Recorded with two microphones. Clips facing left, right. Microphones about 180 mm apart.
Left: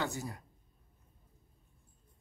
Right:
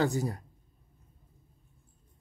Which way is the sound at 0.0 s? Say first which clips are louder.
Right 9 dB; 35° right (ahead or behind).